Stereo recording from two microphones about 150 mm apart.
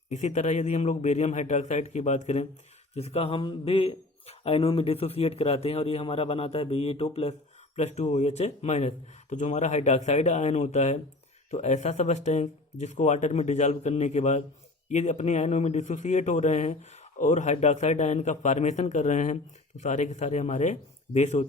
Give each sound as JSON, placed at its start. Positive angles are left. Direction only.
{"t": 0.1, "sound": "speech", "side_deg": 50}